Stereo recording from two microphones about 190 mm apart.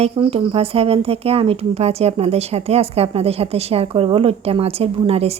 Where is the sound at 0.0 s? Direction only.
30° right (ahead or behind).